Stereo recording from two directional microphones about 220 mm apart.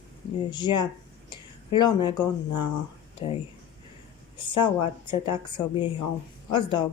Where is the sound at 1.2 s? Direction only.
20° left (ahead or behind).